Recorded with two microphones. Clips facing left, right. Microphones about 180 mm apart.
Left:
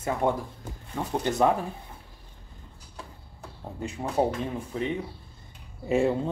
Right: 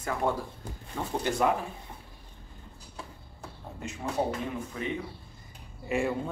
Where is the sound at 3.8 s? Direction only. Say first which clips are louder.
Left 5 dB; 35° left (ahead or behind).